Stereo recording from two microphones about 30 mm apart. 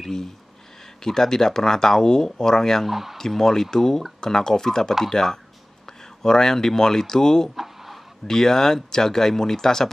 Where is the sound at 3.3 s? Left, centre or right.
Centre.